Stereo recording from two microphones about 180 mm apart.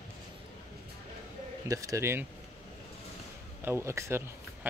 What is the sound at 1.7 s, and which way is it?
Speech, 20° right (ahead or behind).